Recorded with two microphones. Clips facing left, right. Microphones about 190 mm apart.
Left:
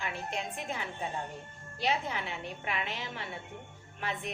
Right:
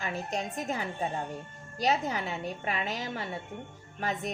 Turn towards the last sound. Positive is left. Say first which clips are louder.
# right 4 dB
turn(degrees=-40)  # may be behind; listen again after turning